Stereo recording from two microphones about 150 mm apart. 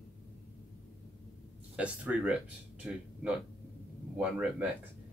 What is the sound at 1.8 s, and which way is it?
Speech, 10° right (ahead or behind).